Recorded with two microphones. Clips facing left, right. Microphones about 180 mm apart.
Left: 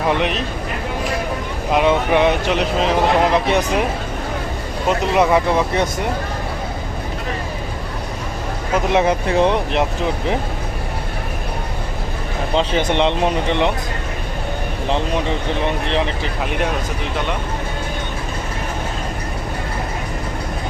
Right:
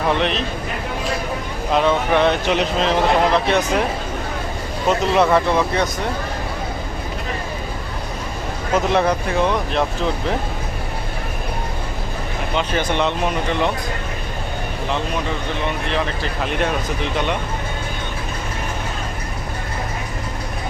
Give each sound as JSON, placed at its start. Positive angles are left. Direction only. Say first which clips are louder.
{"t": 0.1, "sound": "speech", "louder": "even", "side_deg": 10}
{"t": 1.7, "sound": "speech", "louder": "left 1 dB", "side_deg": 15}
{"t": 2.5, "sound": "speech", "louder": "left 1 dB", "side_deg": 5}
{"t": 4.9, "sound": "speech", "louder": "even", "side_deg": 10}
{"t": 8.7, "sound": "speech", "louder": "left 1 dB", "side_deg": 15}
{"t": 9.4, "sound": "speech", "louder": "left 3 dB", "side_deg": 25}
{"t": 12.7, "sound": "speech", "louder": "left 1 dB", "side_deg": 20}
{"t": 15.6, "sound": "speech", "louder": "left 2 dB", "side_deg": 30}